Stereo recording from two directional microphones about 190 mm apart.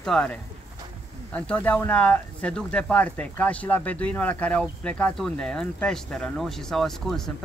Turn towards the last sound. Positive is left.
turn(degrees=0)  # may be behind; listen again after turning